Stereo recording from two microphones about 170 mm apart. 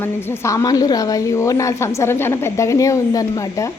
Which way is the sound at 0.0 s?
15° left (ahead or behind).